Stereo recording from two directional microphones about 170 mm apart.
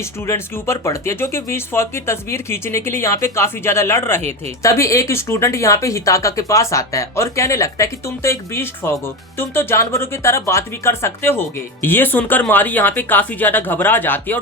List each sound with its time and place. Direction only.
0.0 s speech: 15° left (ahead or behind)